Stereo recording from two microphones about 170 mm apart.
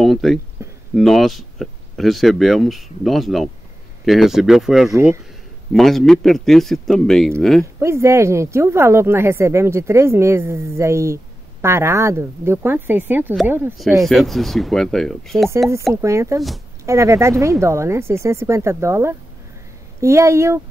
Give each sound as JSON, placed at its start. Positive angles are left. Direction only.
{"t": 0.0, "sound": "speech", "side_deg": 0}
{"t": 0.6, "sound": "a sound", "side_deg": -15}
{"t": 0.9, "sound": "speech", "side_deg": 0}
{"t": 4.9, "sound": "speech", "side_deg": -15}
{"t": 5.7, "sound": "speech", "side_deg": 0}
{"t": 7.8, "sound": "speech", "side_deg": -15}
{"t": 14.0, "sound": "speech", "side_deg": 0}
{"t": 15.9, "sound": "speech", "side_deg": -15}